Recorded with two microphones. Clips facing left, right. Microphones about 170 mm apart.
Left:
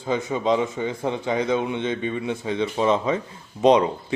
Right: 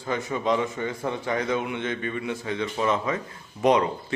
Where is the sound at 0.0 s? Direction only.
20° left (ahead or behind).